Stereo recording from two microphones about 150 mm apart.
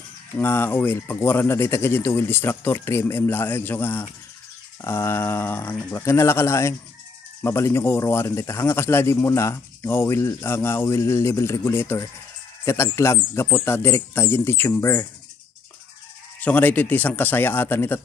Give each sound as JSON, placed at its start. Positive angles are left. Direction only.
{"t": 0.4, "sound": "speech", "side_deg": 15}
{"t": 16.3, "sound": "speech", "side_deg": 10}